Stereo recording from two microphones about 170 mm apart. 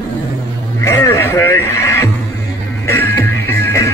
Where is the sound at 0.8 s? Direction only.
15° left (ahead or behind).